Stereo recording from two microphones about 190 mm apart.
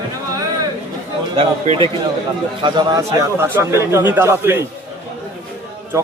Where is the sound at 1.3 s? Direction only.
30° right (ahead or behind); by 4.6 s 15° right (ahead or behind).